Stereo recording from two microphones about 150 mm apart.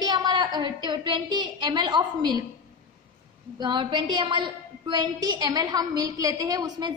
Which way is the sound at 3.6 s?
30° right (ahead or behind).